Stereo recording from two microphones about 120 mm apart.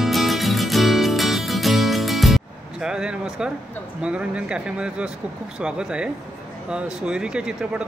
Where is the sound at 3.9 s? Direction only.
10° right (ahead or behind).